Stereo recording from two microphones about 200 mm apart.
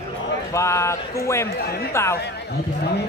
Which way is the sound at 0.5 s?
15° left (ahead or behind).